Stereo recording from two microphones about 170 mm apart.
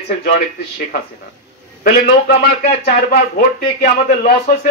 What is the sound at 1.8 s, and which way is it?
A man's voice, 65° left (ahead or behind).